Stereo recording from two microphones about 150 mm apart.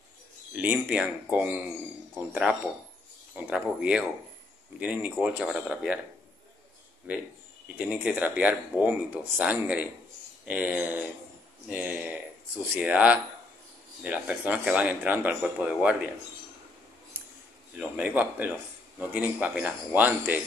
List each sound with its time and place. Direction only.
0.5 s speech: 10° right (ahead or behind)
7.1 s speech: 10° right (ahead or behind)
17.7 s speech: 10° right (ahead or behind)